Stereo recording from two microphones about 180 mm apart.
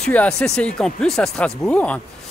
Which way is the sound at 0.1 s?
5° left (ahead or behind).